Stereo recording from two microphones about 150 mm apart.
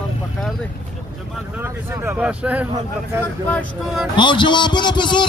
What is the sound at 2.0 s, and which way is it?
Speech, 10° right (ahead or behind).